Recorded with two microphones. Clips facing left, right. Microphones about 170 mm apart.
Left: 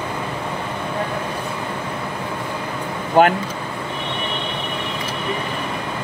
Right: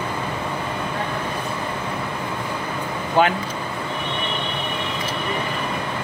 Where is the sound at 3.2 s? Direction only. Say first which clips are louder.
Left 4 dB; 50° left (ahead or behind).